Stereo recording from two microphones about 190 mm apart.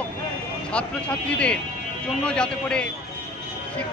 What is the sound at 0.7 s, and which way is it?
Speech, 5° left (ahead or behind).